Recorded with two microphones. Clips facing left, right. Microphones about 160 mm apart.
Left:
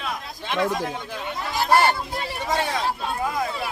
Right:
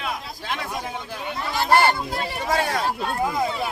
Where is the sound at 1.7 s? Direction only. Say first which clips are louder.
Right 1 dB; 5° left (ahead or behind).